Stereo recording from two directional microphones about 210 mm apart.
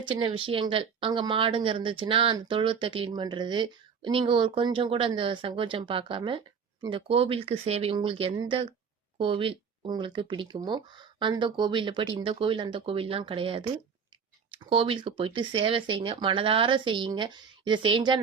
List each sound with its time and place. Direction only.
0.1 s a woman's voice: 25° right (ahead or behind)